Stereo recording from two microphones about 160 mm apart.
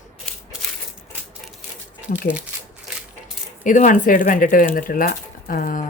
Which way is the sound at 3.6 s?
55° left (ahead or behind).